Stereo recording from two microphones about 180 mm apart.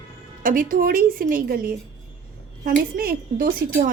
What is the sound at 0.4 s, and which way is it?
A woman's voice, 50° right (ahead or behind).